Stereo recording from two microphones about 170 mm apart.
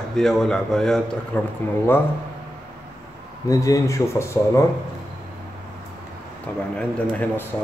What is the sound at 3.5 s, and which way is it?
Speech, 20° left (ahead or behind).